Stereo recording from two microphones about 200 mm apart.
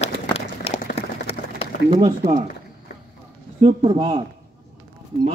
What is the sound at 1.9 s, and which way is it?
Speech, 30° right (ahead or behind).